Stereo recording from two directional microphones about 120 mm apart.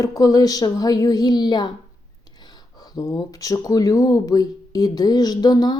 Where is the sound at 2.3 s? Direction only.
35° left (ahead or behind).